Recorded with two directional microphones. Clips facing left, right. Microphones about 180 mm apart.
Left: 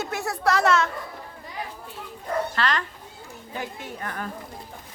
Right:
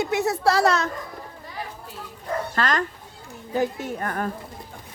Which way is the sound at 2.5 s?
45° right (ahead or behind).